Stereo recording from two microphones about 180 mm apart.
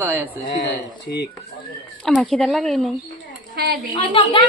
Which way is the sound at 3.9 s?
25° left (ahead or behind).